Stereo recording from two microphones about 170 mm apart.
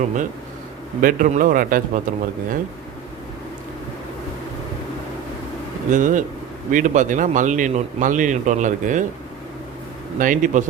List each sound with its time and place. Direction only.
1.0 s a man's voice: 50° right (ahead or behind)
5.9 s a man's voice: 50° right (ahead or behind)
10.2 s a man's voice: 50° right (ahead or behind)